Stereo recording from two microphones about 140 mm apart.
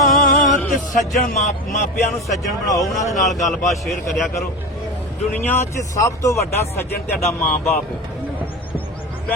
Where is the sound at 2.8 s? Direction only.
Centre (ahead or behind).